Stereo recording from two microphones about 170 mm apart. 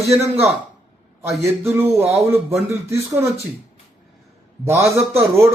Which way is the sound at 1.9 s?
35° right (ahead or behind).